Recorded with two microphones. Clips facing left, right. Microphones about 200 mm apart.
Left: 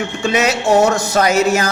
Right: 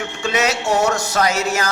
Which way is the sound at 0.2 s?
15° left (ahead or behind).